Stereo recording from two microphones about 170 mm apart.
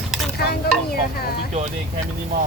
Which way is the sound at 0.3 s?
65° left (ahead or behind).